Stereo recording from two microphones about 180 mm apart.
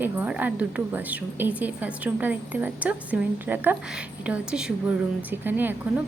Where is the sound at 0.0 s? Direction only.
10° right (ahead or behind).